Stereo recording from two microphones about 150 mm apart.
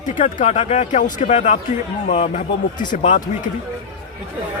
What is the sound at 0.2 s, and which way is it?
Speech, 50° left (ahead or behind).